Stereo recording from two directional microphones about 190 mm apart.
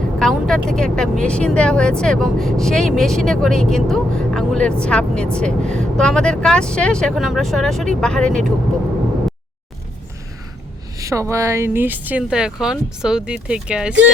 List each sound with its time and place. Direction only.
0.2 s speech: 5° left (ahead or behind)
10.9 s speech: 15° right (ahead or behind)